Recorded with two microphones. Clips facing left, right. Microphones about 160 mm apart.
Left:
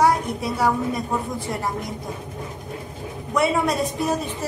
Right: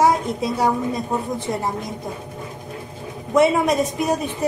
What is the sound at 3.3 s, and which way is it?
Speech, 20° right (ahead or behind).